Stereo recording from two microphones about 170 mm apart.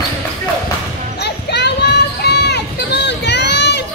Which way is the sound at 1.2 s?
80° left.